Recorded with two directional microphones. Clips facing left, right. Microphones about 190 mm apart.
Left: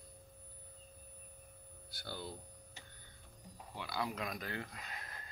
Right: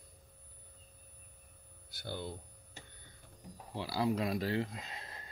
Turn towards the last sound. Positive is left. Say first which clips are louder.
# right 2 dB
turn(degrees=-25)  # may be behind; listen again after turning